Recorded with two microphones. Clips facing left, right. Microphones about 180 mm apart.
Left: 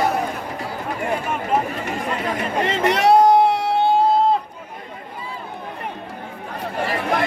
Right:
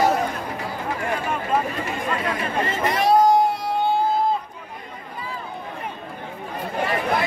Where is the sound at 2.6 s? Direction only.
75° left (ahead or behind).